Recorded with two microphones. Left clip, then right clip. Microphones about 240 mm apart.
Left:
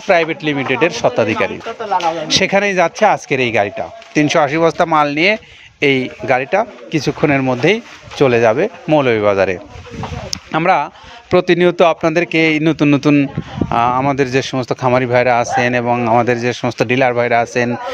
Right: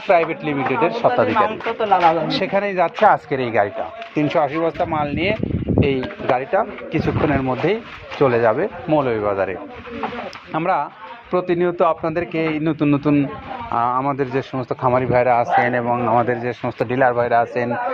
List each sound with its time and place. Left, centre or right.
0.1 s a man's voice: left